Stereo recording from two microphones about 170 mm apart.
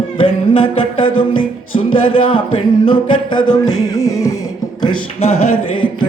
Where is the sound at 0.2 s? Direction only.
35° left (ahead or behind).